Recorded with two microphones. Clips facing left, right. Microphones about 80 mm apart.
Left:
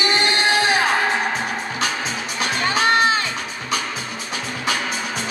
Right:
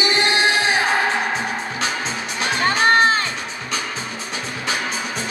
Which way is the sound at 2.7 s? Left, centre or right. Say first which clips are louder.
Right 2 dB; right.